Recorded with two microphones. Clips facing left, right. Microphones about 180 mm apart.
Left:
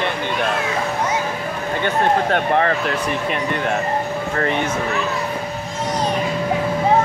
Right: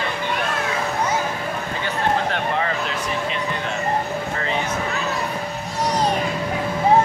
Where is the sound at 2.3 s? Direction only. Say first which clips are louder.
Left 6 dB; 55° left (ahead or behind).